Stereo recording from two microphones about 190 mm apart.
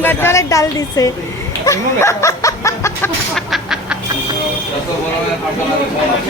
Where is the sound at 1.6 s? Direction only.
15° left (ahead or behind).